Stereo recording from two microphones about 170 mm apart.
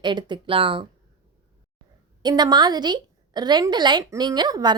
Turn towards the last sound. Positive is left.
turn(degrees=-25)  # may be behind; listen again after turning